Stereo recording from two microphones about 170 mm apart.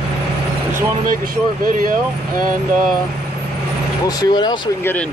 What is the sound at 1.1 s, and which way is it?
Speech, 55° right (ahead or behind).